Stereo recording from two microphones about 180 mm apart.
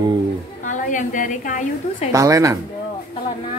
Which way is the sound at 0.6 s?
45° left (ahead or behind).